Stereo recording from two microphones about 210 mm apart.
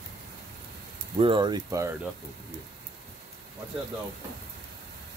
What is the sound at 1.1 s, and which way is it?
Speech, 25° right (ahead or behind).